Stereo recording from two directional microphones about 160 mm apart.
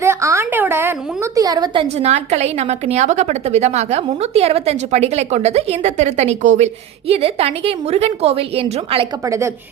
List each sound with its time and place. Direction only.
0.0 s a woman's voice: 15° right (ahead or behind); by 9.0 s 35° right (ahead or behind)
9.2 s a woman's voice: 20° right (ahead or behind)